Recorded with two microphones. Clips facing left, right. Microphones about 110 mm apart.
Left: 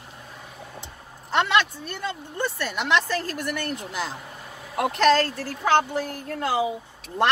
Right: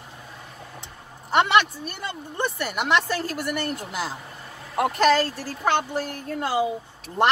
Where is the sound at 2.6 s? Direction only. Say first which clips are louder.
Right 1 dB; 10° right (ahead or behind).